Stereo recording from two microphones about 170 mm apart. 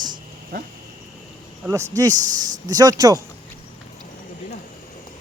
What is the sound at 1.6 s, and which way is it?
Speech, 15° right (ahead or behind).